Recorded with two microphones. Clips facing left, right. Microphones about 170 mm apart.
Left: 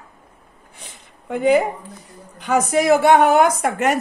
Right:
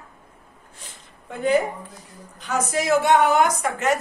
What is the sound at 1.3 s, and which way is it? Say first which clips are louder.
Speech: left 4 dB; 65° left (ahead or behind).